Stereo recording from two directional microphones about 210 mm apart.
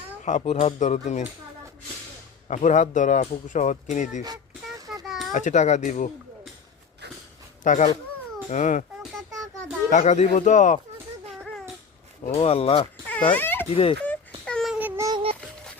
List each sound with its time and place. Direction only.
0.3 s speech: 35° left (ahead or behind)
2.5 s speech: 35° left (ahead or behind)
4.8 s a sound: 15° right (ahead or behind)
5.0 s children playing: centre (ahead or behind)
5.3 s speech: 35° left (ahead or behind)
7.6 s speech: 35° left (ahead or behind)
9.9 s speech: 35° left (ahead or behind)
12.3 s speech: 30° left (ahead or behind)
13.3 s speech: 10° left (ahead or behind)
13.7 s speech: 25° left (ahead or behind)
14.4 s a sound: centre (ahead or behind); by 15.2 s 15° right (ahead or behind)